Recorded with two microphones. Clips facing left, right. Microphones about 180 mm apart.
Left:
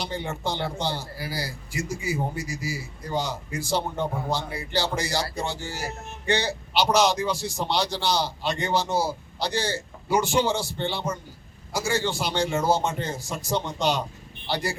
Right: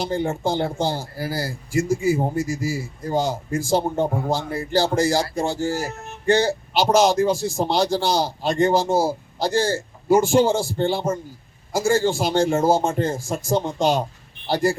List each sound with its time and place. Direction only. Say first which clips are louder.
0.0 s a man's voice: right 7 dB; 45° right (ahead or behind)